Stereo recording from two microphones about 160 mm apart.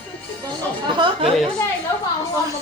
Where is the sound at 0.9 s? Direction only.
30° right (ahead or behind).